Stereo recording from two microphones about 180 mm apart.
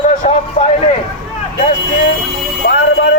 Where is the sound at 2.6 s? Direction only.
60° left (ahead or behind).